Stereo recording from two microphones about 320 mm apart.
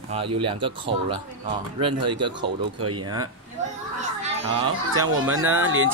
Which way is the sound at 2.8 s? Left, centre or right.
Right.